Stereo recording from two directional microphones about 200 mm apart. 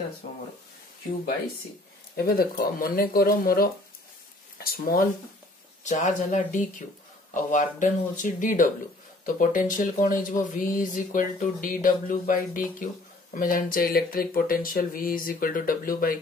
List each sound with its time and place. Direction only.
2.1 s speech: 50° left (ahead or behind)